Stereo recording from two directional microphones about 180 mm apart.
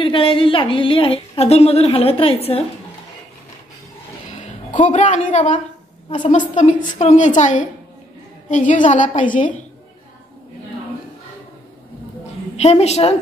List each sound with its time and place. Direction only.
0.0 s a woman's voice: 30° left (ahead or behind)
4.4 s speech: 40° left (ahead or behind)
6.0 s a woman's voice: 30° left (ahead or behind)
6.3 s a woman's voice: 45° left (ahead or behind)
12.6 s a woman's voice: 35° left (ahead or behind)